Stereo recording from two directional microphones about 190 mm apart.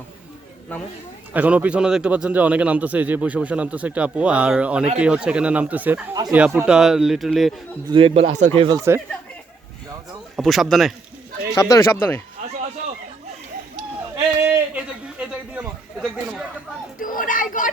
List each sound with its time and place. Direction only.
1.3 s a man's voice: 10° right (ahead or behind)
7.9 s speech: 25° right (ahead or behind)
10.3 s a man's voice: centre (ahead or behind)
11.5 s speech: 15° left (ahead or behind)
14.4 s a sound: 10° right (ahead or behind)
17.0 s speech: 45° left (ahead or behind)